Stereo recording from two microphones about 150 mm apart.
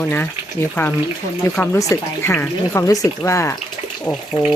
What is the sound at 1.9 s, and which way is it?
Speech, 15° left (ahead or behind).